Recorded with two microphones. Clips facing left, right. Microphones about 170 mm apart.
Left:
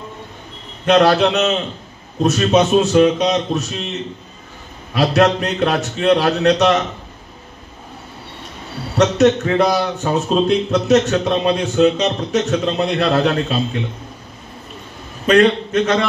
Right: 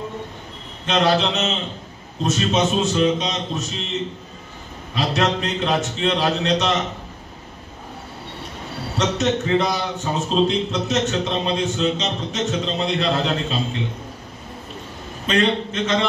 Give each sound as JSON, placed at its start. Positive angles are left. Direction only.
{"t": 0.8, "sound": "a man's voice", "side_deg": 60}
{"t": 4.9, "sound": "a man's voice", "side_deg": 60}
{"t": 8.9, "sound": "a man's voice", "side_deg": 65}
{"t": 15.2, "sound": "a man's voice", "side_deg": 60}